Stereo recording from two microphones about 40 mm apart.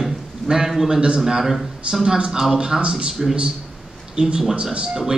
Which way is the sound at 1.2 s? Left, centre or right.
Centre.